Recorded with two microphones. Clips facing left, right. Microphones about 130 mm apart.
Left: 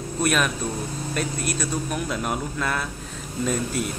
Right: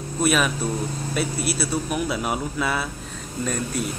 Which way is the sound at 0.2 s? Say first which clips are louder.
Right 2 dB; 5° right (ahead or behind).